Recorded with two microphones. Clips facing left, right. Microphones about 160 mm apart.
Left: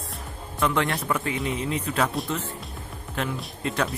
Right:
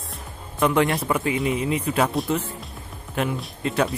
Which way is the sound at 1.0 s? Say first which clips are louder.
Right 4 dB; 15° right (ahead or behind).